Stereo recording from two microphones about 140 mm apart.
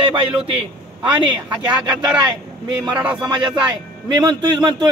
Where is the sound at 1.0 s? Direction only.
35° right (ahead or behind).